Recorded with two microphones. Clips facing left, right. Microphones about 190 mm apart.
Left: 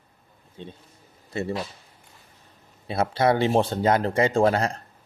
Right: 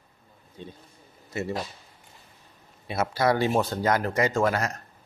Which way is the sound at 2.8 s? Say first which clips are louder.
Left 2 dB; 30° left (ahead or behind).